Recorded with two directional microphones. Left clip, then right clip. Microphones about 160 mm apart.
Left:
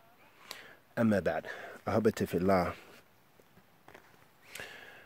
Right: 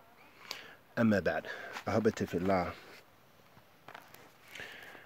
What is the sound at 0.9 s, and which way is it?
Speech, 30° left (ahead or behind).